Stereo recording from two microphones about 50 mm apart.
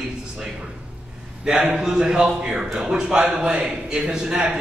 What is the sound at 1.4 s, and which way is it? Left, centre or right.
A man's voice, centre.